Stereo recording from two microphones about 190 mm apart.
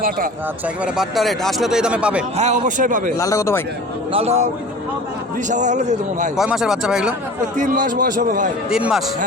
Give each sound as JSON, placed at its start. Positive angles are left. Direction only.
{"t": 0.9, "sound": "speech", "side_deg": 0}
{"t": 2.3, "sound": "a man's voice", "side_deg": -35}
{"t": 3.2, "sound": "speech", "side_deg": 15}
{"t": 4.1, "sound": "a man's voice", "side_deg": -35}
{"t": 5.5, "sound": "a man's voice", "side_deg": -40}
{"t": 6.3, "sound": "speech", "side_deg": 0}
{"t": 7.5, "sound": "speech", "side_deg": -40}
{"t": 8.7, "sound": "speech", "side_deg": 0}